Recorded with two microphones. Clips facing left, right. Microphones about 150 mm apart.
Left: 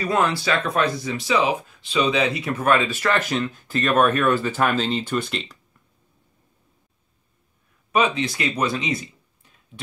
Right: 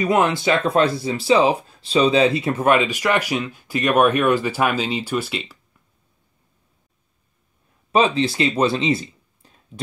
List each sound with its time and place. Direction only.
0.0 s speech: 20° right (ahead or behind)
7.9 s speech: 30° right (ahead or behind)